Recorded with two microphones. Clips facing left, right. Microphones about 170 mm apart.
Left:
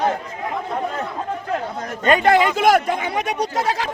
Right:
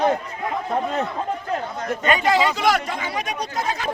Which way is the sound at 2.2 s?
55° left (ahead or behind).